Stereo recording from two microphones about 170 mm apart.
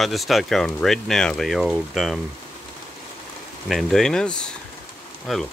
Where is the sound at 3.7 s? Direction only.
Centre (ahead or behind).